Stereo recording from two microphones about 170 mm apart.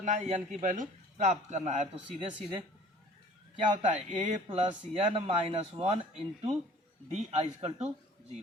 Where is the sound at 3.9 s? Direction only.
45° right (ahead or behind).